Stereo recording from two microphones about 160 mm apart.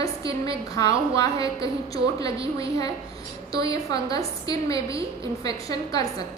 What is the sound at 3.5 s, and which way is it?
A woman's voice, 20° left (ahead or behind).